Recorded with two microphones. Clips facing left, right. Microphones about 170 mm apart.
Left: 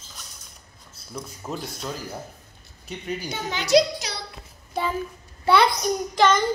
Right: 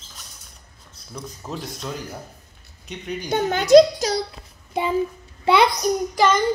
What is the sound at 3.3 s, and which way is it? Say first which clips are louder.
Speech: right 8 dB; 50° right (ahead or behind).